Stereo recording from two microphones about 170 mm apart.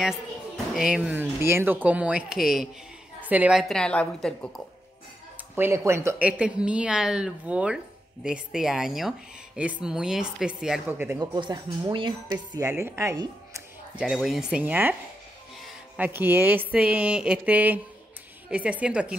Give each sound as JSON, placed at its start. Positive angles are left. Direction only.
{"t": 0.7, "sound": "speech", "side_deg": -5}
{"t": 5.6, "sound": "speech", "side_deg": -15}
{"t": 11.1, "sound": "speech", "side_deg": -25}
{"t": 13.9, "sound": "speech", "side_deg": 0}
{"t": 16.0, "sound": "speech", "side_deg": -10}